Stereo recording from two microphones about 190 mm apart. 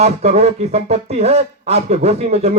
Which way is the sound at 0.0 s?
35° right (ahead or behind).